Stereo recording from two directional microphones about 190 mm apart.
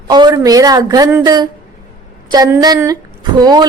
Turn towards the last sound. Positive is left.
turn(degrees=-20)  # may be behind; listen again after turning